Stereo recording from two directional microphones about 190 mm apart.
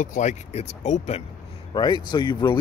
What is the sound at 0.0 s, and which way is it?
Speech, 40° left (ahead or behind).